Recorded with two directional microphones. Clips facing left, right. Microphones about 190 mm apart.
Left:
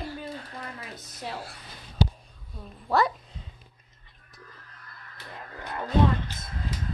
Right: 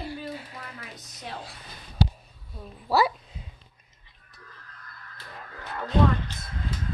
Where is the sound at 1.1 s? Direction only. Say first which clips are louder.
Left 2 dB; 5° left (ahead or behind).